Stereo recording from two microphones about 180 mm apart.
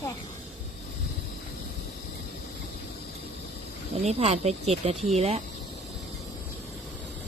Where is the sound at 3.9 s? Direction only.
35° right (ahead or behind).